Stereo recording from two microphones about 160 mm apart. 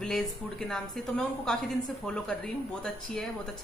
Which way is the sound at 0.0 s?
5° left (ahead or behind).